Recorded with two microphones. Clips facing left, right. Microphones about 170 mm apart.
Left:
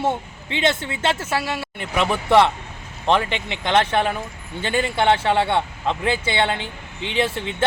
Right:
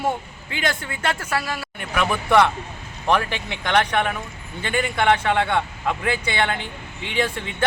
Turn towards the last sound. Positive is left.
turn(degrees=25)  # may be behind; listen again after turning